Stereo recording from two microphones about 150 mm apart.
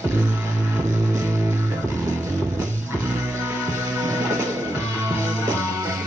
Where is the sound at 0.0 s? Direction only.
20° right (ahead or behind).